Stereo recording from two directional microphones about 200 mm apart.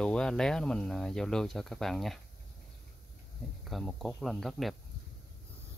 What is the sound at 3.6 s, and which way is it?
Speech, centre (ahead or behind).